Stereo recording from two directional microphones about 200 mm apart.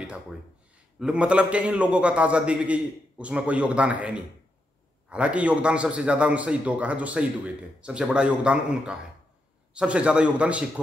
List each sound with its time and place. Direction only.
0.9 s a man's voice: 5° right (ahead or behind)